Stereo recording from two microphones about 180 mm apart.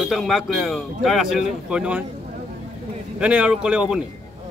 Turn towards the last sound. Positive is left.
turn(degrees=-5)  # may be behind; listen again after turning